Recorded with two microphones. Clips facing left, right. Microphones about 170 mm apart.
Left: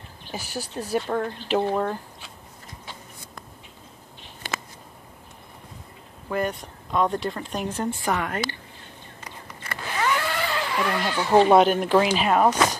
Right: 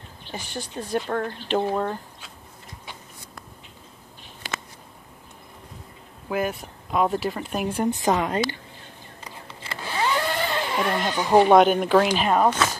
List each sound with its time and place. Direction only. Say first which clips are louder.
0.3 s speech: left 1 dB; 10° left (ahead or behind)
6.2 s speech: even; 5° right (ahead or behind)
9.2 s vehicle: even; 25° right (ahead or behind)
11.5 s speech: right 1 dB; centre (ahead or behind)